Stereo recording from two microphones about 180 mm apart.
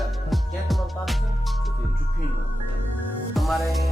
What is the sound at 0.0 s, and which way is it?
Music, centre (ahead or behind).